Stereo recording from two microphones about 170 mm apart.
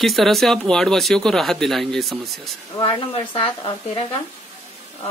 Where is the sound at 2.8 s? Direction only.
30° left (ahead or behind).